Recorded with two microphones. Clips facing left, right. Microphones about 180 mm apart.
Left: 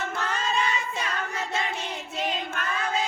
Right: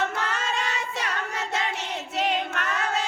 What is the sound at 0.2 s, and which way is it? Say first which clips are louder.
Singing: left 1 dB; 75° right (ahead or behind).